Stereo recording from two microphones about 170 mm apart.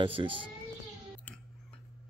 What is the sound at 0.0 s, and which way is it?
Speech, 30° right (ahead or behind).